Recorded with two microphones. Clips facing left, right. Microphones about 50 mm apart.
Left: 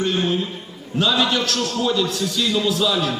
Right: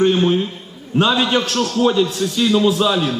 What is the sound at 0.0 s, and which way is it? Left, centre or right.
A man's voice, right.